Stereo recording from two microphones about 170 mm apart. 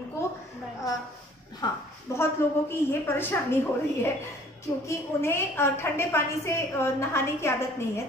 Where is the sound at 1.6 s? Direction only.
25° left (ahead or behind).